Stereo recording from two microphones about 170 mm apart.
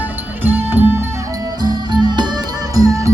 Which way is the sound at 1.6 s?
25° right (ahead or behind).